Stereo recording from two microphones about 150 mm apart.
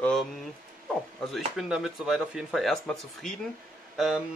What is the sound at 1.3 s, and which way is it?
Speech, 5° right (ahead or behind).